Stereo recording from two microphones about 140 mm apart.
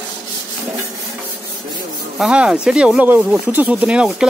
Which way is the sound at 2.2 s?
5° right (ahead or behind).